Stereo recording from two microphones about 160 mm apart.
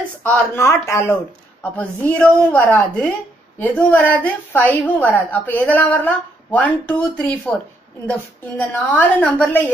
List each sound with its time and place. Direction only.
0.2 s a woman's voice: 15° left (ahead or behind)